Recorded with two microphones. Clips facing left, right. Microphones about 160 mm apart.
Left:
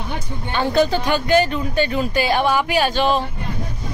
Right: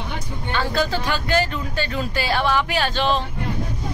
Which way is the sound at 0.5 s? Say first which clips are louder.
Left 5 dB; 20° left (ahead or behind).